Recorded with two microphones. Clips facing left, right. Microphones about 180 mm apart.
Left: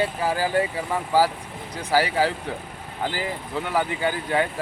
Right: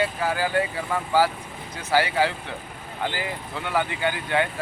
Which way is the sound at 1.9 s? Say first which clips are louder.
Left 1 dB; 35° left (ahead or behind).